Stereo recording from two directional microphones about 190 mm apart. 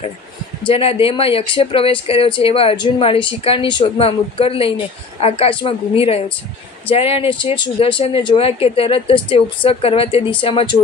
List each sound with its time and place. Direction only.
0.7 s a woman's voice: 30° left (ahead or behind)